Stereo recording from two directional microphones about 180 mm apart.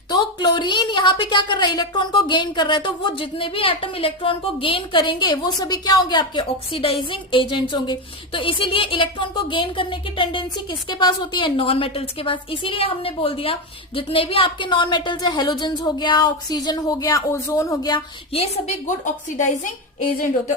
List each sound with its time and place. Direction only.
0.1 s a woman's voice: 25° left (ahead or behind)
18.9 s a woman's voice: 45° left (ahead or behind)